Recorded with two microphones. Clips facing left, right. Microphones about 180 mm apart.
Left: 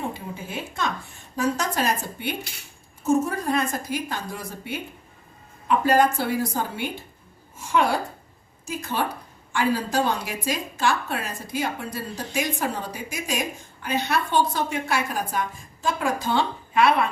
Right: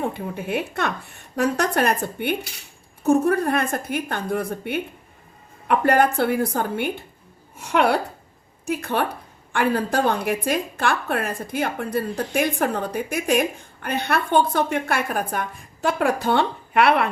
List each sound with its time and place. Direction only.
0.1 s a woman's voice: 65° right (ahead or behind)